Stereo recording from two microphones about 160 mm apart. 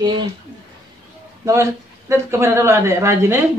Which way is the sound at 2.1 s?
15° right (ahead or behind).